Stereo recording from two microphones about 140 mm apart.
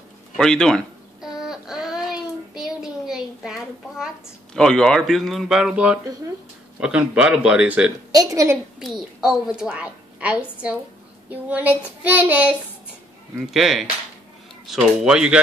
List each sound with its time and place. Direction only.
0.4 s baby cry: 5° left (ahead or behind)
4.6 s a woman's voice: 5° left (ahead or behind)
8.1 s a woman's voice: 25° right (ahead or behind)
8.7 s a woman's voice: centre (ahead or behind)